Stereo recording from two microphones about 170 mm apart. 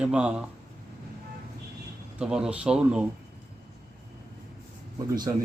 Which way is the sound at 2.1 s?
5° right (ahead or behind).